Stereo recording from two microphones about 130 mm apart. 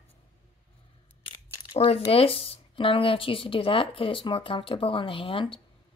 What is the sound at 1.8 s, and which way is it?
Speech, 50° left (ahead or behind).